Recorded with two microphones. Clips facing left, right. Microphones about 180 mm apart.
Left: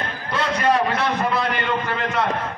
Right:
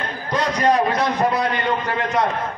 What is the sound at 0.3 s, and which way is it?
Speech, 40° right (ahead or behind).